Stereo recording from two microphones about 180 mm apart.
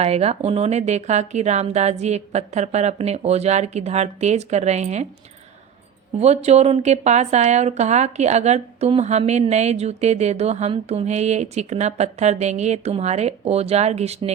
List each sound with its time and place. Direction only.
0.0 s a woman's voice: 35° right (ahead or behind)
6.1 s a woman's voice: 35° right (ahead or behind)